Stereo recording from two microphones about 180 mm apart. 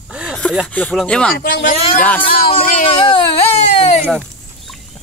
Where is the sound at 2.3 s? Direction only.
55° left (ahead or behind).